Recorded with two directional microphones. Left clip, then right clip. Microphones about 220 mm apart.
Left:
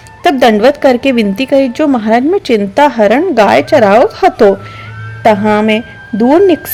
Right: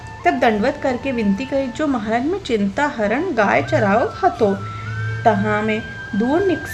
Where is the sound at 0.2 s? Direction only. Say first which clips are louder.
Left 9 dB; 40° left (ahead or behind).